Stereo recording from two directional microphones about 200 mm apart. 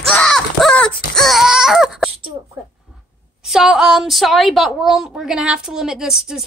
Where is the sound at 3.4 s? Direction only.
Centre (ahead or behind).